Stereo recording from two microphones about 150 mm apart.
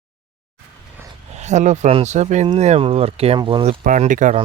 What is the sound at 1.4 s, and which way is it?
A man's voice, 50° right (ahead or behind).